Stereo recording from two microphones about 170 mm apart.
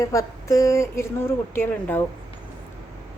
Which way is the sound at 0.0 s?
20° left (ahead or behind).